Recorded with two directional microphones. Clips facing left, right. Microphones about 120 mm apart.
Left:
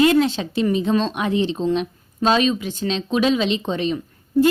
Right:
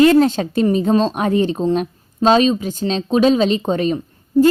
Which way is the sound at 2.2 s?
35° right (ahead or behind).